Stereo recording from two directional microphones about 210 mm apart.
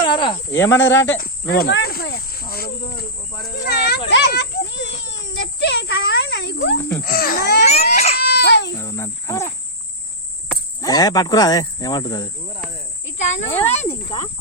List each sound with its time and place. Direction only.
0.0 s speech: 25° left (ahead or behind)
0.5 s speech: 10° left (ahead or behind)
0.9 s speech: 60° left (ahead or behind)
1.2 s speech: 45° left (ahead or behind)
4.1 s a sound: 55° left (ahead or behind)
7.0 s speech: 45° left (ahead or behind)
7.6 s a sound: 30° left (ahead or behind)
8.1 s baby cry: 50° left (ahead or behind)
8.8 s speech: 15° left (ahead or behind)
10.8 s speech: 20° left (ahead or behind)
13.2 s snake: 30° left (ahead or behind)
13.5 s speech: 10° left (ahead or behind)
14.0 s speech: 20° left (ahead or behind)